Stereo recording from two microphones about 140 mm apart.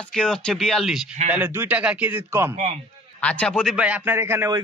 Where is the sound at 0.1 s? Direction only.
5° left (ahead or behind).